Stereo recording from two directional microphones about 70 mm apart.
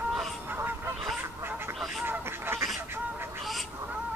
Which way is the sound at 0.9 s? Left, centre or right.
Centre.